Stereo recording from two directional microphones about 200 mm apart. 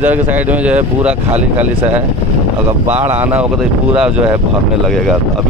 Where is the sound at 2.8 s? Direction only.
10° right (ahead or behind).